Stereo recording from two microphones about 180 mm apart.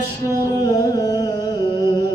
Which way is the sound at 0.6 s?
20° left (ahead or behind).